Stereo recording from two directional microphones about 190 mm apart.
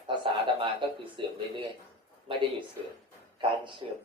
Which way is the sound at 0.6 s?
25° right (ahead or behind).